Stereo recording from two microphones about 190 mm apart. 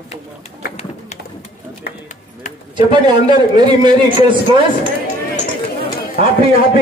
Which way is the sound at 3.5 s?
25° right (ahead or behind).